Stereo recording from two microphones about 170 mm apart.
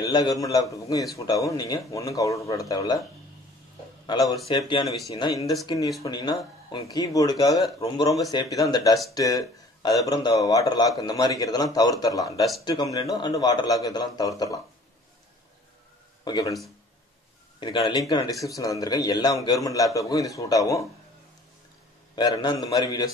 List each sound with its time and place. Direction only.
0.0 s speech: 25° left (ahead or behind)
4.0 s speech: 25° left (ahead or behind)
4.8 s speech: centre (ahead or behind)
5.1 s speech: 20° left (ahead or behind)
16.3 s speech: 20° left (ahead or behind)
17.6 s speech: 30° left (ahead or behind)
22.1 s speech: 25° left (ahead or behind)